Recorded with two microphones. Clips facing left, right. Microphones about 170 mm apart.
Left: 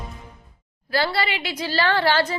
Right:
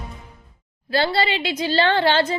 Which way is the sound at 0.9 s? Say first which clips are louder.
Right 3 dB; 25° right (ahead or behind).